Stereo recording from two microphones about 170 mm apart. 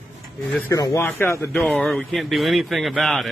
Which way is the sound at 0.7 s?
15° left (ahead or behind).